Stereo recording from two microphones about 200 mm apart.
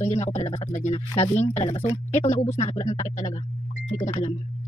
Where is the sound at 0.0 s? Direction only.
35° left (ahead or behind).